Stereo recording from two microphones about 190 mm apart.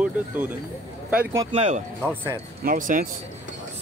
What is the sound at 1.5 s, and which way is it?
Speech, 35° right (ahead or behind).